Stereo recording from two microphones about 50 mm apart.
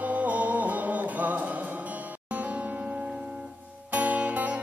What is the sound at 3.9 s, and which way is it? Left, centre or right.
Guitar, right.